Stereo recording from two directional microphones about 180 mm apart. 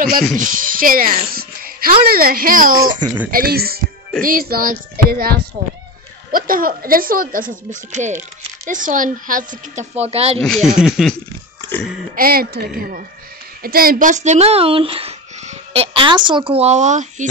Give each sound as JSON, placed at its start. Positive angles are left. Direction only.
{"t": 0.4, "sound": "speech", "side_deg": -50}
{"t": 10.4, "sound": "a sound", "side_deg": 5}
{"t": 12.2, "sound": "speech", "side_deg": -55}